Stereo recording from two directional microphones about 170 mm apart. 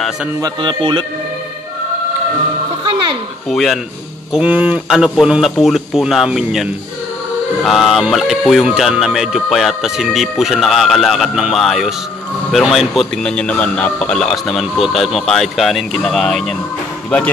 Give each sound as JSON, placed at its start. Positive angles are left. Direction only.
{"t": 0.4, "sound": "speech", "side_deg": -30}
{"t": 3.4, "sound": "speech", "side_deg": 0}